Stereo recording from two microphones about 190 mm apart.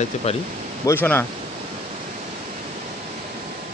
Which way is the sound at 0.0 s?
35° left (ahead or behind).